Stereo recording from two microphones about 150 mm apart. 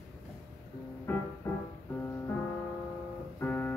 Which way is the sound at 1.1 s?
10° left (ahead or behind).